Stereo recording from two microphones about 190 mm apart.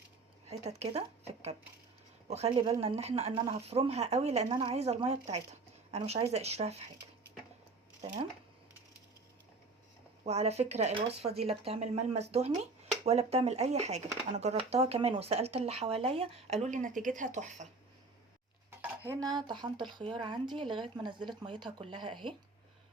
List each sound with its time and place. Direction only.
0.6 s speech: 35° right (ahead or behind)
10.2 s speech: 35° right (ahead or behind)
18.8 s speech: 20° right (ahead or behind)